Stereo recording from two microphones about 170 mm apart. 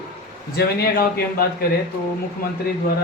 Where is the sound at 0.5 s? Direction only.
65° left (ahead or behind).